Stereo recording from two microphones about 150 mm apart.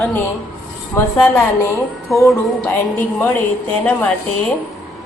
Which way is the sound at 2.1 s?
20° left (ahead or behind).